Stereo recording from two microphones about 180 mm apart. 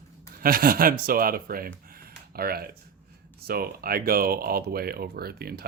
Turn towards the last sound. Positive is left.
turn(degrees=-60)  # may be behind; listen again after turning